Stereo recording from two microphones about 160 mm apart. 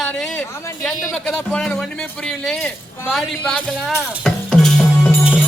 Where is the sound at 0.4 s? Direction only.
15° left (ahead or behind).